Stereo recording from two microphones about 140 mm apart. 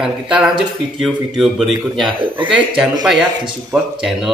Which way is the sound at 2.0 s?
35° right (ahead or behind).